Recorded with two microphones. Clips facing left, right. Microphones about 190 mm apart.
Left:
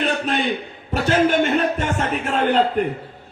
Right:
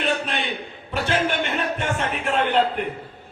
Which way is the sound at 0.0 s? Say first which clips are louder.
Left 4 dB; 40° left (ahead or behind).